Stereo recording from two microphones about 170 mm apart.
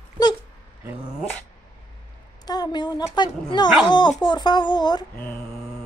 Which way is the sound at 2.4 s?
25° left (ahead or behind).